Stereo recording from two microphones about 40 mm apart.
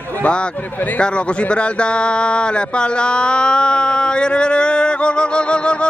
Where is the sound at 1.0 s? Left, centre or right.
Left.